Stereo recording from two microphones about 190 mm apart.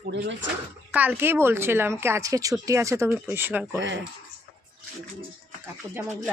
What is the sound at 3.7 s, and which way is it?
Speech, 70° right (ahead or behind).